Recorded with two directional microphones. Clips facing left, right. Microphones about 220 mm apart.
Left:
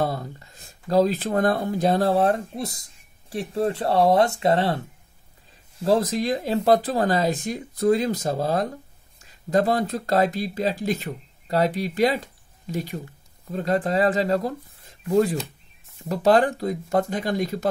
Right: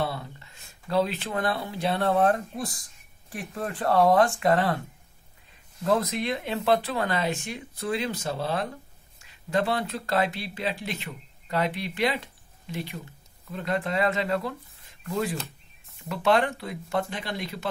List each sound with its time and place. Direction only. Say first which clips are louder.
0.0 s speech: left 5 dB; 40° left (ahead or behind); by 4.7 s 25° left (ahead or behind)
5.9 s speech: left 4 dB; 30° left (ahead or behind)